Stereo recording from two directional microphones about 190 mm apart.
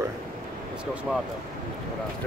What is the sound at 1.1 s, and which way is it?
Speech, centre (ahead or behind).